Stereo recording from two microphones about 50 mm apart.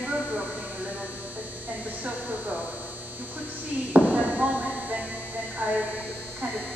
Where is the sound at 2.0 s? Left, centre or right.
Right.